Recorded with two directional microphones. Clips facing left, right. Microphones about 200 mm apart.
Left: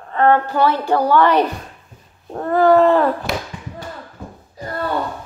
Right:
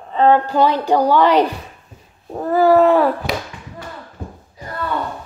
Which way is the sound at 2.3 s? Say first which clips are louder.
Even; 5° right (ahead or behind).